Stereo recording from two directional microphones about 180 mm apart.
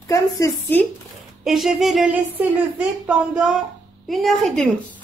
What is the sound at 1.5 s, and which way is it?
Speech, centre (ahead or behind).